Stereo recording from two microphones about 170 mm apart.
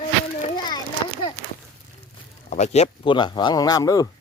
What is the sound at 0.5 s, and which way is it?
Children playing, 25° left (ahead or behind).